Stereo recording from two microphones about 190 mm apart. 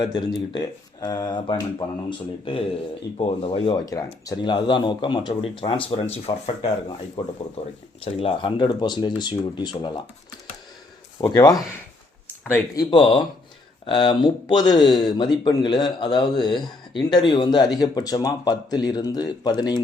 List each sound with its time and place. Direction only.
0.0 s speech: 25° left (ahead or behind)
11.2 s speech: 20° left (ahead or behind)
12.9 s speech: 25° left (ahead or behind)